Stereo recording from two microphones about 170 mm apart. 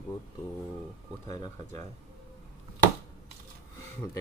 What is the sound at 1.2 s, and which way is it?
Speech, 20° left (ahead or behind).